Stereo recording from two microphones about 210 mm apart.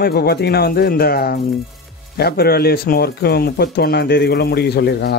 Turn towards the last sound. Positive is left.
turn(degrees=50)  # may be behind; listen again after turning